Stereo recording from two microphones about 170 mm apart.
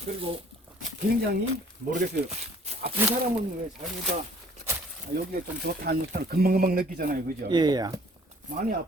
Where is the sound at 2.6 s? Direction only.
35° right (ahead or behind).